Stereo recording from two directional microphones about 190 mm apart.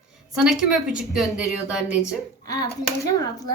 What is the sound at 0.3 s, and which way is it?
Speech, 5° right (ahead or behind).